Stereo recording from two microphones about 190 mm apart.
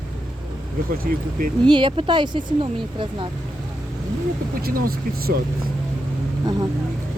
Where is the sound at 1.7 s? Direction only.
25° right (ahead or behind).